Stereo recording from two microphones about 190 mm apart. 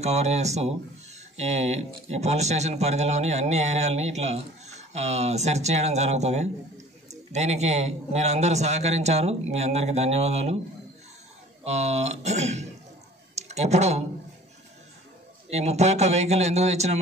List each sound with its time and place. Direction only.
0.0 s speech: 35° right (ahead or behind)
11.6 s speech: 35° right (ahead or behind)
15.5 s speech: 35° right (ahead or behind)